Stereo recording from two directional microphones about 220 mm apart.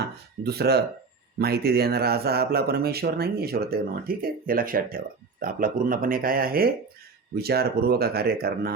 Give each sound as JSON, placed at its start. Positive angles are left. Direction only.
{"t": 0.0, "sound": "speech", "side_deg": -45}